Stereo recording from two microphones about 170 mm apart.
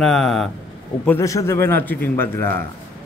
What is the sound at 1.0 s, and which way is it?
Speech, 15° left (ahead or behind).